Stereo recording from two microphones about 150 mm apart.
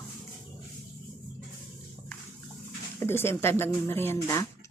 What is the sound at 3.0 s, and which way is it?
Speech, 15° left (ahead or behind).